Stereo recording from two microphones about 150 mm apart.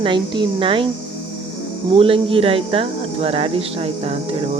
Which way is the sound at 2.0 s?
40° right (ahead or behind).